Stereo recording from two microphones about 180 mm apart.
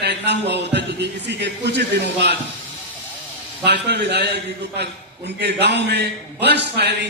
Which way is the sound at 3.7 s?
65° right (ahead or behind).